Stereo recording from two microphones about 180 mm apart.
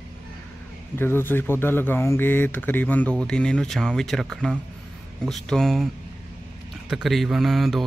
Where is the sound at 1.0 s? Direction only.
10° left (ahead or behind).